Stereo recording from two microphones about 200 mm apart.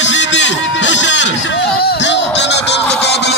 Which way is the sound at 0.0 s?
65° left (ahead or behind).